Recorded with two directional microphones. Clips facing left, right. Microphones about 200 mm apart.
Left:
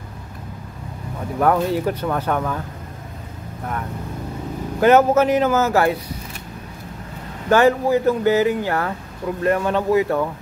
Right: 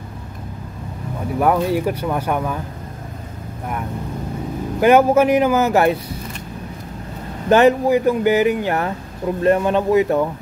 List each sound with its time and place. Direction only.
1.4 s speech: 10° right (ahead or behind)
4.7 s speech: 15° right (ahead or behind)
7.4 s speech: 20° right (ahead or behind)